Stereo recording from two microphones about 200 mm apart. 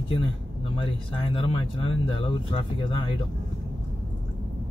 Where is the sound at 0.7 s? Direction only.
25° left (ahead or behind).